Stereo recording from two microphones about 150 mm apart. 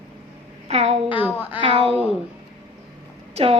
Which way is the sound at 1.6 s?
35° right (ahead or behind).